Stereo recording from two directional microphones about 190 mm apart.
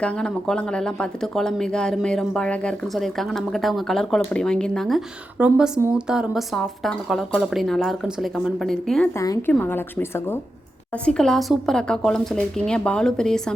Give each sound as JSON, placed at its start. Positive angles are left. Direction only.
{"t": 0.0, "sound": "speech", "side_deg": 5}
{"t": 9.1, "sound": "a woman's voice", "side_deg": 20}